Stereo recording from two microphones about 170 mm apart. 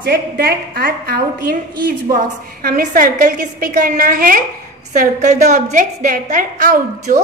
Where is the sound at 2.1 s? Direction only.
50° right (ahead or behind).